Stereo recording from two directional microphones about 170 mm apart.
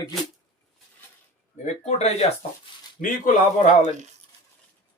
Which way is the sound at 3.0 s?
55° left (ahead or behind).